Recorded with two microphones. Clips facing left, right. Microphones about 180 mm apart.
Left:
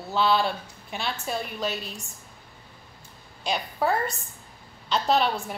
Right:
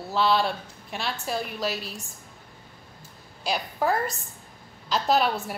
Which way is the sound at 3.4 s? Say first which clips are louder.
Even; centre (ahead or behind).